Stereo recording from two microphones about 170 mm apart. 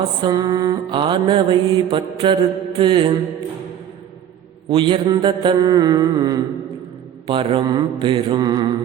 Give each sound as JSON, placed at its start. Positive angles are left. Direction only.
{"t": 0.2, "sound": "mantra", "side_deg": -25}
{"t": 4.7, "sound": "mantra", "side_deg": -30}